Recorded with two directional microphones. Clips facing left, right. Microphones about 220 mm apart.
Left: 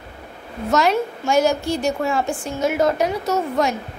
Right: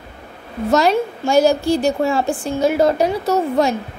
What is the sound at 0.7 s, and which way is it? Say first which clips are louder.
A woman's voice: right 3 dB; 35° right (ahead or behind).